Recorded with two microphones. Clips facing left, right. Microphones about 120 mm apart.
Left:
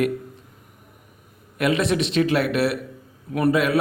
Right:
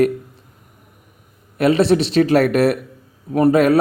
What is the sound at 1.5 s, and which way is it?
A man's voice, 30° right (ahead or behind).